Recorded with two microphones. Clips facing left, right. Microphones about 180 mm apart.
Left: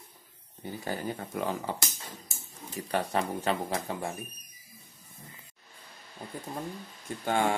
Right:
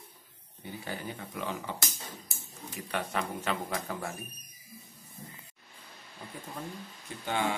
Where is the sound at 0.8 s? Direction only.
40° left (ahead or behind).